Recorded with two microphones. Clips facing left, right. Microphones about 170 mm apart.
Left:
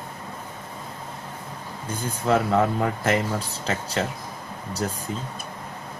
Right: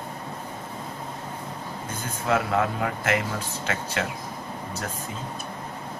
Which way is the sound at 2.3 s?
35° left (ahead or behind).